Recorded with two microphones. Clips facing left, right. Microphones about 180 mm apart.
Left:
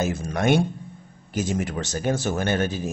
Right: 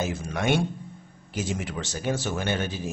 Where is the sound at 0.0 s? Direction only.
45° left (ahead or behind).